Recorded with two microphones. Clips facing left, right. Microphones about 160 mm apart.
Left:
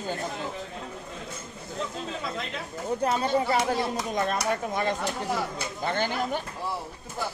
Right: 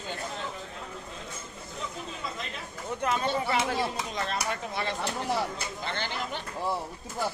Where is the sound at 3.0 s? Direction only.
35° left (ahead or behind).